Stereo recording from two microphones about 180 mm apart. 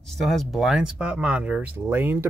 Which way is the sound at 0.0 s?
Centre (ahead or behind).